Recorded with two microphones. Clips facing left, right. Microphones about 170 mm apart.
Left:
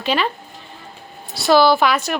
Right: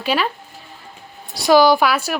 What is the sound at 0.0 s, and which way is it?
Speech, 10° right (ahead or behind).